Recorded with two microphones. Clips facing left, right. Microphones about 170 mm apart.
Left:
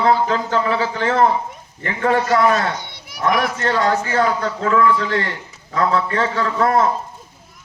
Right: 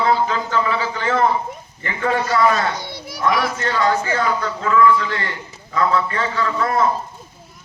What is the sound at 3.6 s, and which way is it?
A man's voice, 55° left (ahead or behind).